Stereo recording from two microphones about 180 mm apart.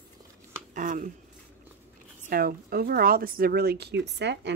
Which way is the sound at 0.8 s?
45° right (ahead or behind).